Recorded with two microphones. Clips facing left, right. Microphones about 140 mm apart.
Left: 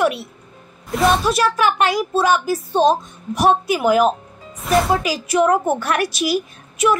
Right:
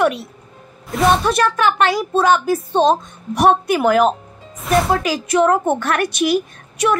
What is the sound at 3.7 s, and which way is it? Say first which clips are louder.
Speech: right 1 dB; 55° right (ahead or behind).